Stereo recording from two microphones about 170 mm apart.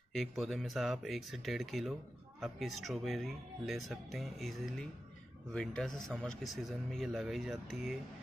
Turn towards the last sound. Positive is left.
turn(degrees=0)  # may be behind; listen again after turning